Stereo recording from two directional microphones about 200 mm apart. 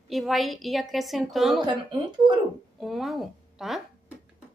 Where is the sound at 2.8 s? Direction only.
Centre (ahead or behind).